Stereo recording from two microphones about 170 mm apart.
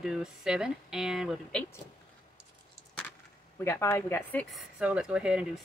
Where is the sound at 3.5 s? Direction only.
15° left (ahead or behind).